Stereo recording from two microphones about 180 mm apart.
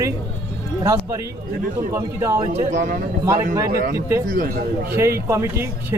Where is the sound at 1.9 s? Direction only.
15° right (ahead or behind).